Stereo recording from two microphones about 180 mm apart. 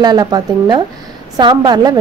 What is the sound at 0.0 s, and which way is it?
A woman's voice, 20° right (ahead or behind).